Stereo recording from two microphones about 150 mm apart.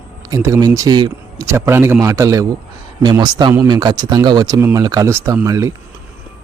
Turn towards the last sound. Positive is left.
turn(degrees=-20)  # may be behind; listen again after turning